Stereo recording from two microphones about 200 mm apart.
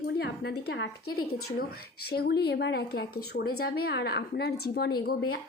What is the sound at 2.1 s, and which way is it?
A woman's voice, 50° left (ahead or behind).